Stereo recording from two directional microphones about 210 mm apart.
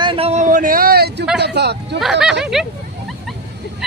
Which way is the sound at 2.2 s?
Centre (ahead or behind).